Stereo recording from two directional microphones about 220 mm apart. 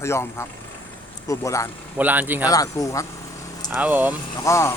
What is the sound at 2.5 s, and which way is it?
Speech, 15° left (ahead or behind).